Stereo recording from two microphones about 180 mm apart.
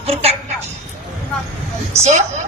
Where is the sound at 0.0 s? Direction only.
35° right (ahead or behind).